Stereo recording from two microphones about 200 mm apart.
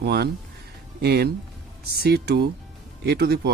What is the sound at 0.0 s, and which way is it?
A man's voice, 55° right (ahead or behind).